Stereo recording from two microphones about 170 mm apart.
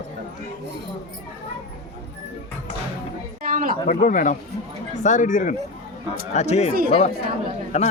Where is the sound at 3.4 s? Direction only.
55° right (ahead or behind).